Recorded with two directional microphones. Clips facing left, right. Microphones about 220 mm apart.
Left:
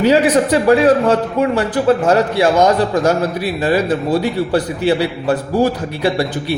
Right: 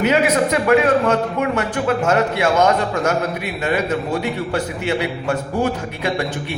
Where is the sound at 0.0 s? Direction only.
35° left (ahead or behind).